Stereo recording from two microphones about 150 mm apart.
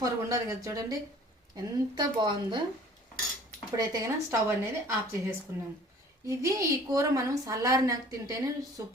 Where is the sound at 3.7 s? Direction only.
25° right (ahead or behind).